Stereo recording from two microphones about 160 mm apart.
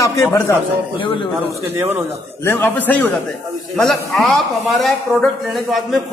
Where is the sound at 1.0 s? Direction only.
30° left (ahead or behind).